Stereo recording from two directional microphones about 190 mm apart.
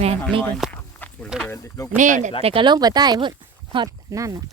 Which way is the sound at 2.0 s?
40° right (ahead or behind).